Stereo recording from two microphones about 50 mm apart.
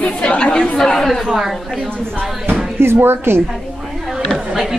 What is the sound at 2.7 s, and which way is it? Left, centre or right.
Speech, right.